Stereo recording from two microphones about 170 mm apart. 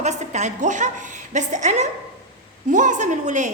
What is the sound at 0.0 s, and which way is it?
A woman's voice, 45° right (ahead or behind).